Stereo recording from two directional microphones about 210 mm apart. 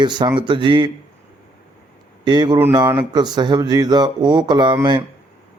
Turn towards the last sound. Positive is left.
turn(degrees=-20)  # may be behind; listen again after turning